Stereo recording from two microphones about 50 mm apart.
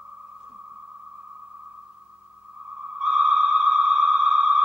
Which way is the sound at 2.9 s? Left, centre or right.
Centre.